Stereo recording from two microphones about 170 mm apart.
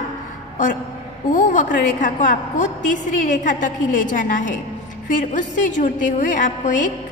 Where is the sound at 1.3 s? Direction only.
50° left (ahead or behind).